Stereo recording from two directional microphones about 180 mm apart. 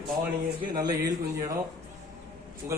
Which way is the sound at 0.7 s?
20° right (ahead or behind).